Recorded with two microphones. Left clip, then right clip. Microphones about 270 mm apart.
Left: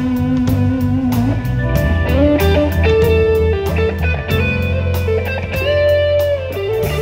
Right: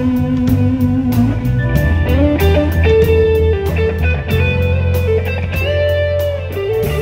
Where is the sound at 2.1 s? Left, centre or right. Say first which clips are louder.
Left 1 dB; left.